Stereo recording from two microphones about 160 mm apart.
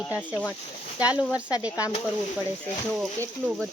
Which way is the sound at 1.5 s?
25° left (ahead or behind).